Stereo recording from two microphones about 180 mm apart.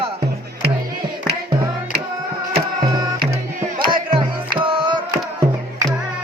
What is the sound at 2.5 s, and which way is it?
Music, 25° right (ahead or behind).